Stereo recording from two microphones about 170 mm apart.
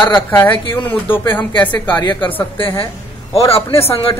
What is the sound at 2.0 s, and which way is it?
A woman's voice, 25° left (ahead or behind).